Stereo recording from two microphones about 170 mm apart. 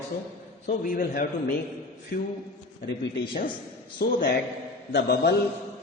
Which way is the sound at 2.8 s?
90° left.